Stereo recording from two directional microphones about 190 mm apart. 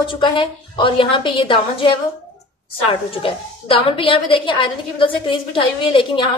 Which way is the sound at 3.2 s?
30° left (ahead or behind).